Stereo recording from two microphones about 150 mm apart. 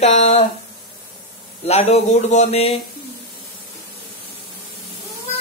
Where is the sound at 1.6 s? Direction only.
45° left (ahead or behind).